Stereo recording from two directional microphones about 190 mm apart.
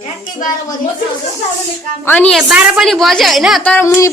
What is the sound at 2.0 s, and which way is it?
A woman's voice, 10° left (ahead or behind).